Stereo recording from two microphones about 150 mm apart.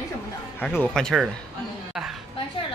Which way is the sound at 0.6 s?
10° left (ahead or behind).